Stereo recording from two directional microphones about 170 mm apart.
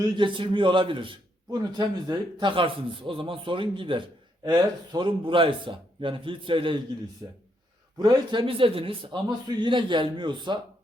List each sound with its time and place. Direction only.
0.0 s a man's voice: 30° right (ahead or behind)